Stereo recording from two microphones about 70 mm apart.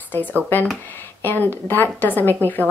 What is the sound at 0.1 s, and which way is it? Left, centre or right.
Speech, left.